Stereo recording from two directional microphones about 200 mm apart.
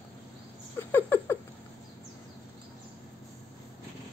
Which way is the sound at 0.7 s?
10° left (ahead or behind).